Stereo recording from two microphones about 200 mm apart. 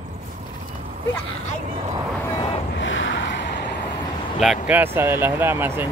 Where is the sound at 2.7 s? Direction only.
70° left (ahead or behind).